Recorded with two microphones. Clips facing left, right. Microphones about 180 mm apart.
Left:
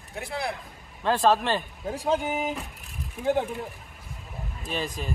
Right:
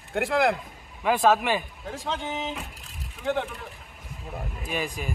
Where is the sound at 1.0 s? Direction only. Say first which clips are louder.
Right 1 dB; 10° right (ahead or behind).